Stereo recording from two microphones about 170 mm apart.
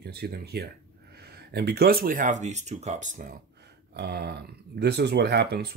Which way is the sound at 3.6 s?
75° right (ahead or behind).